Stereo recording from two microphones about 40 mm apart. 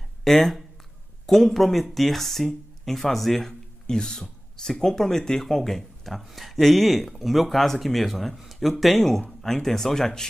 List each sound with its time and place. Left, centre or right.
0.2 s speech: centre